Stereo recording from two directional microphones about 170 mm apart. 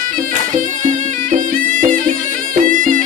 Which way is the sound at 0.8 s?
50° right (ahead or behind).